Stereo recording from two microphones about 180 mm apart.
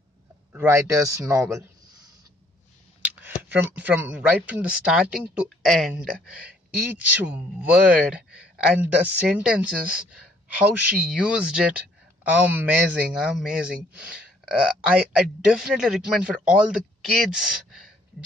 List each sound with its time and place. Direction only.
0.5 s speech: 15° right (ahead or behind)
3.4 s speech: 10° right (ahead or behind)
6.9 s speech: 10° right (ahead or behind)